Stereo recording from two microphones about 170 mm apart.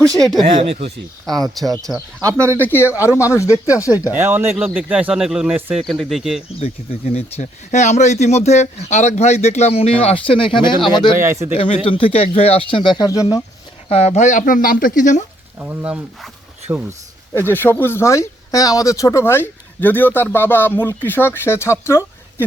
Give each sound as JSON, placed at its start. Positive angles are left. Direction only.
{"t": 0.0, "sound": "speech", "side_deg": 5}
{"t": 0.4, "sound": "speech", "side_deg": -40}
{"t": 1.2, "sound": "speech", "side_deg": 0}
{"t": 2.2, "sound": "speech", "side_deg": -15}
{"t": 2.6, "sound": "speech", "side_deg": 10}
{"t": 2.8, "sound": "speech", "side_deg": -10}
{"t": 3.2, "sound": "speech", "side_deg": 15}
{"t": 3.9, "sound": "speech", "side_deg": -10}
{"t": 6.6, "sound": "speech", "side_deg": 35}
{"t": 11.1, "sound": "speech", "side_deg": -15}
{"t": 11.5, "sound": "speech", "side_deg": 35}
{"t": 13.9, "sound": "speech", "side_deg": 40}
{"t": 15.5, "sound": "speech", "side_deg": -10}
{"t": 17.5, "sound": "speech", "side_deg": 10}